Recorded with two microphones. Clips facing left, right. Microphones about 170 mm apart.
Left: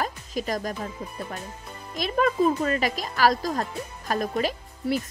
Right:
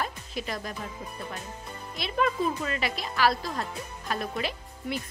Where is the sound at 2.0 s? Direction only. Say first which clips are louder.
Left 5 dB; 45° left (ahead or behind).